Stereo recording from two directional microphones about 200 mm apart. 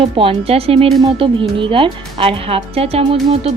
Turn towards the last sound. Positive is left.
turn(degrees=-30)  # may be behind; listen again after turning